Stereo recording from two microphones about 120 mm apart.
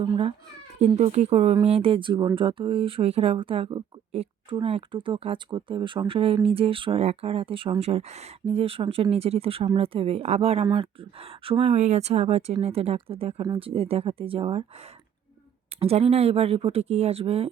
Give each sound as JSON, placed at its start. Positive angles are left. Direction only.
{"t": 0.9, "sound": "speech", "side_deg": -70}
{"t": 4.1, "sound": "speech", "side_deg": -55}
{"t": 15.8, "sound": "speech", "side_deg": -55}